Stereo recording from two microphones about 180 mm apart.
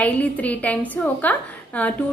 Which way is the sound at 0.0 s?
10° left (ahead or behind).